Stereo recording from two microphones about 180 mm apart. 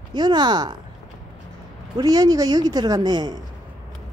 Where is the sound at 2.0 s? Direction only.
20° right (ahead or behind).